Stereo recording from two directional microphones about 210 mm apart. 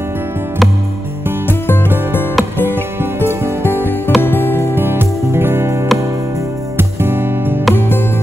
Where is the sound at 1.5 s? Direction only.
10° left (ahead or behind).